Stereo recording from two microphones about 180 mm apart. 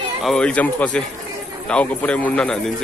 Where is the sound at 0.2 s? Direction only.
5° left (ahead or behind).